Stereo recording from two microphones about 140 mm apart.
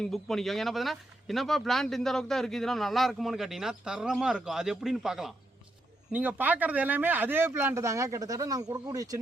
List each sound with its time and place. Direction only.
0.0 s speech: centre (ahead or behind); by 9.1 s 25° right (ahead or behind)